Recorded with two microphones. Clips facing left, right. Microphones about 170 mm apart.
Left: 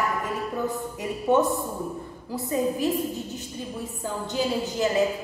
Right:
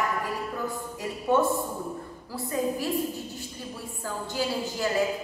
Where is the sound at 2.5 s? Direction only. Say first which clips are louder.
Left 3 dB; 20° left (ahead or behind).